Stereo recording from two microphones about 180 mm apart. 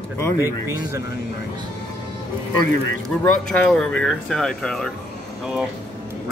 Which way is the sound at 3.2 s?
10° left (ahead or behind).